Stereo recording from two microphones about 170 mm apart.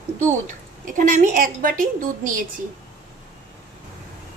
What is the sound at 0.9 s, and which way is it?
A woman's voice, 50° right (ahead or behind).